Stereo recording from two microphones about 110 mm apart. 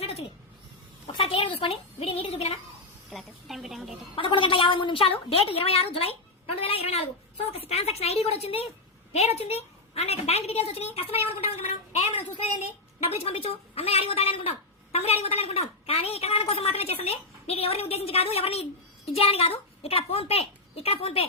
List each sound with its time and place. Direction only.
1.0 s a sound: 60° left (ahead or behind)
3.1 s a woman's voice: centre (ahead or behind)
4.1 s a woman's voice: 50° left (ahead or behind)